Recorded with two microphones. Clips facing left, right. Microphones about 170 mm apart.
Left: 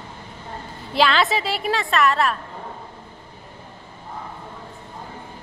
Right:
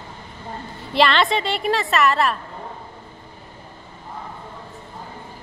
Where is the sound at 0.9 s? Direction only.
Centre (ahead or behind).